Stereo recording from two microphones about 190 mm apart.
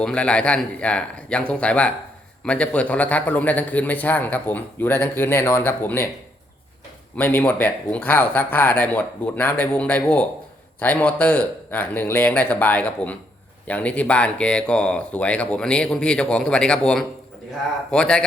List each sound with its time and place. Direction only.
0.0 s a man's voice: 5° left (ahead or behind)
7.2 s a man's voice: 10° left (ahead or behind)